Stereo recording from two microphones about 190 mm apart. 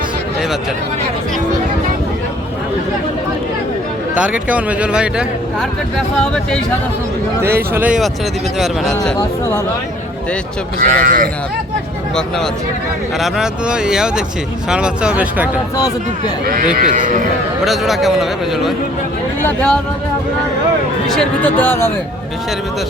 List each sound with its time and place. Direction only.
4.1 s a man's voice: 5° right (ahead or behind)
7.4 s a man's voice: 10° right (ahead or behind)
10.8 s speech: 45° right (ahead or behind)
13.1 s a man's voice: centre (ahead or behind)
16.9 s speech: 45° right (ahead or behind)
17.7 s a man's voice: centre (ahead or behind)
21.2 s speech: 10° left (ahead or behind)